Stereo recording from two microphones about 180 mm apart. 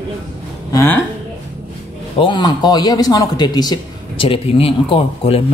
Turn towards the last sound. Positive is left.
turn(degrees=30)  # may be behind; listen again after turning